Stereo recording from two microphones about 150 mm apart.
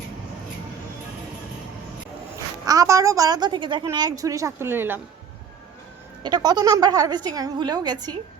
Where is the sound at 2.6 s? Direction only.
20° right (ahead or behind).